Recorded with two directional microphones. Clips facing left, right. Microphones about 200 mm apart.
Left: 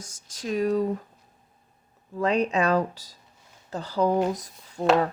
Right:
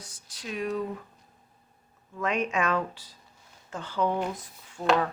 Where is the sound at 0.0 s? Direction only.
45° left (ahead or behind).